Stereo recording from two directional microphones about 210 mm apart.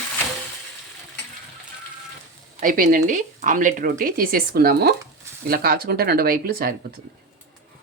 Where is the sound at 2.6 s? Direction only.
40° right (ahead or behind).